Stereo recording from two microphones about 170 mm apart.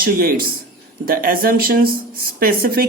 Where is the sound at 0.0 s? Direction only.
60° right (ahead or behind).